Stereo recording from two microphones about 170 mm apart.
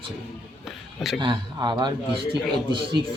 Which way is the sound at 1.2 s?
25° right (ahead or behind).